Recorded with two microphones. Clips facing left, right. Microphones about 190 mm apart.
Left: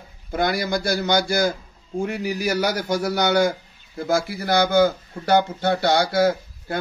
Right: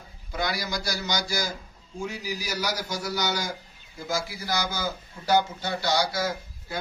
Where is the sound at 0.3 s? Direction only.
55° left (ahead or behind).